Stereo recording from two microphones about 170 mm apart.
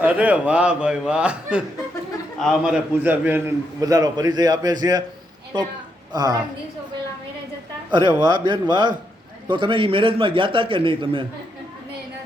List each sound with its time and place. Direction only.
0.0 s a man's voice: 10° right (ahead or behind)
3.0 s a man's voice: 10° right (ahead or behind)
7.9 s a man's voice: 25° right (ahead or behind)